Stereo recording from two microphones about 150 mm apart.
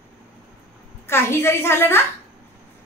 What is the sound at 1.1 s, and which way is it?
Speech, 15° left (ahead or behind).